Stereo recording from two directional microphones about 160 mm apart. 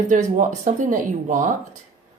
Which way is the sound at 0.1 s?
50° right (ahead or behind).